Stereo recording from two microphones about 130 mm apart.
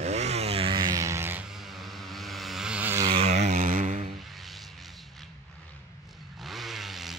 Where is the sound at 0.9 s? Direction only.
20° right (ahead or behind).